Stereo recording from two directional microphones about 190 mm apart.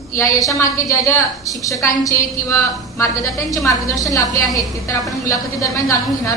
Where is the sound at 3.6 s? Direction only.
15° left (ahead or behind).